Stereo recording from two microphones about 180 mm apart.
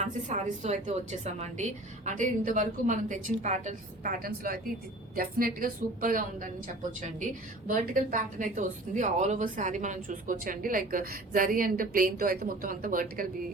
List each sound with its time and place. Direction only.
0.0 s a woman's voice: 45° right (ahead or behind)
7.7 s a woman's voice: 45° right (ahead or behind)